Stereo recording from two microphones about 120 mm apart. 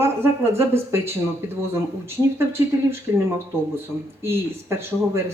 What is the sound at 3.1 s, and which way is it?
Speech, 15° right (ahead or behind).